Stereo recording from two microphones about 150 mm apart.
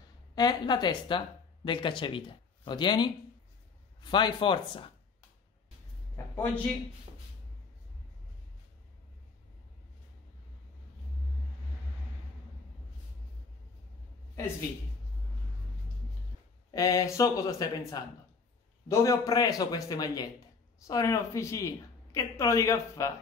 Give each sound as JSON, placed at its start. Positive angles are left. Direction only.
{"t": 0.4, "sound": "speech", "side_deg": 25}
{"t": 6.1, "sound": "a man's voice", "side_deg": 10}
{"t": 16.7, "sound": "a woman's voice", "side_deg": 25}